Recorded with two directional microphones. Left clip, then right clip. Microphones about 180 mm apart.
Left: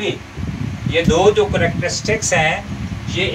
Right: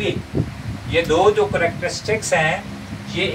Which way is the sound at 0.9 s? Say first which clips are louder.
Left 2 dB; centre (ahead or behind).